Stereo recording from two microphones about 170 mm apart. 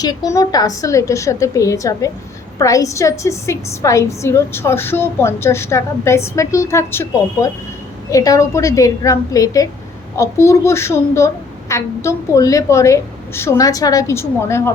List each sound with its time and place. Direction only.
0.3 s a woman's voice: 20° left (ahead or behind)